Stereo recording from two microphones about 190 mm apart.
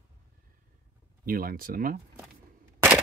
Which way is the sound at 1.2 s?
50° right (ahead or behind).